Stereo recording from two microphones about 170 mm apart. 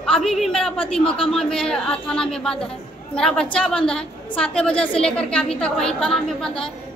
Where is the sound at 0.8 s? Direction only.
30° left (ahead or behind).